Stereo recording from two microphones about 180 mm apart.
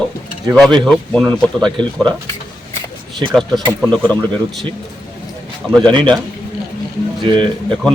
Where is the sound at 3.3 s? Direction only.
5° left (ahead or behind).